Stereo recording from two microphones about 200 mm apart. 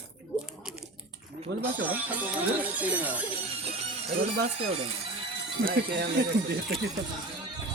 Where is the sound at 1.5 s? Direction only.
60° right (ahead or behind).